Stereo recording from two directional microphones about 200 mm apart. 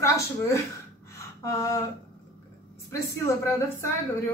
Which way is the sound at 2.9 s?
15° left (ahead or behind).